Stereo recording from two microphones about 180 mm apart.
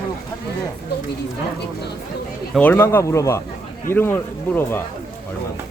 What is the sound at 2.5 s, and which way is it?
Speech, 10° left (ahead or behind).